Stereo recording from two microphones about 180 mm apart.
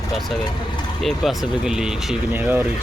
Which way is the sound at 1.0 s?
Centre (ahead or behind).